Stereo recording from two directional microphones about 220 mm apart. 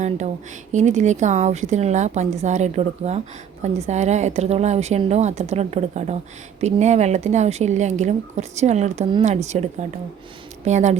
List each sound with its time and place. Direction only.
0.7 s speech: 35° right (ahead or behind)
10.7 s speech: 30° right (ahead or behind)